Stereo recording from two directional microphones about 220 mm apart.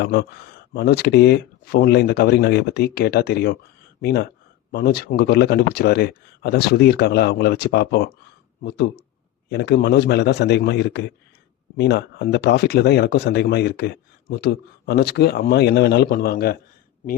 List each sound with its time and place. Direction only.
0.0 s speech: 45° left (ahead or behind)